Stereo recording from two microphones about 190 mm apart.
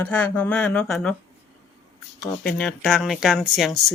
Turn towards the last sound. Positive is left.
turn(degrees=0)  # may be behind; listen again after turning